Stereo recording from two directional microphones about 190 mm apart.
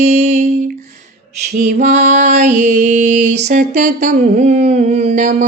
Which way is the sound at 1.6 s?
45° right (ahead or behind).